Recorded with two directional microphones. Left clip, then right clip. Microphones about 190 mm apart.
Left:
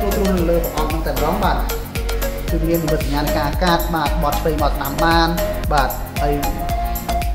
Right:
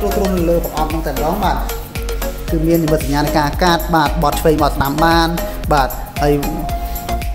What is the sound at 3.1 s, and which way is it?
Speech, 60° right (ahead or behind).